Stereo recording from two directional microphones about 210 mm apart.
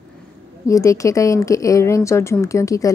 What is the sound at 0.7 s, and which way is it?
A woman's voice, 15° left (ahead or behind).